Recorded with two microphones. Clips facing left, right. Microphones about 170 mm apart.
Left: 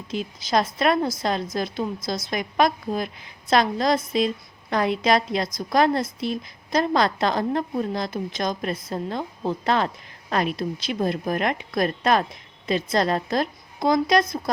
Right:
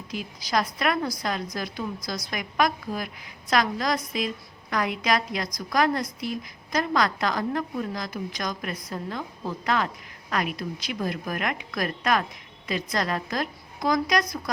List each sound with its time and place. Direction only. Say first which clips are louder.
0.1 s a woman's voice: left 4 dB; 25° left (ahead or behind)